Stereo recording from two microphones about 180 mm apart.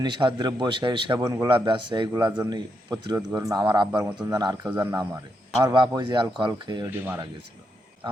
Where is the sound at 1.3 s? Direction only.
15° right (ahead or behind).